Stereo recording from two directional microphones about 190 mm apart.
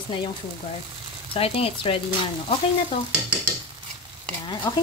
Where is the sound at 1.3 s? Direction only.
30° left (ahead or behind).